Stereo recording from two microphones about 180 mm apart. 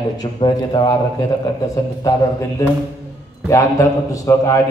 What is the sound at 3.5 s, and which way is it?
A man's voice, 20° left (ahead or behind).